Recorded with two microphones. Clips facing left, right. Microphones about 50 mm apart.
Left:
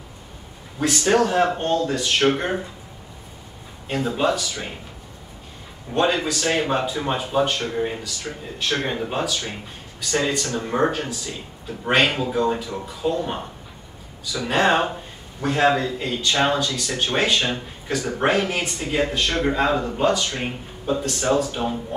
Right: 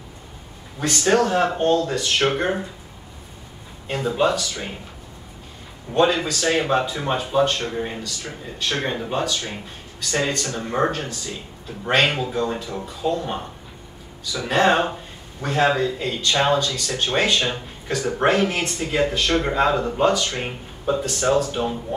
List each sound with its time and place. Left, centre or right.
0.7 s speech: centre
3.8 s speech: centre
5.9 s speech: centre
10.6 s speech: centre
14.5 s speech: centre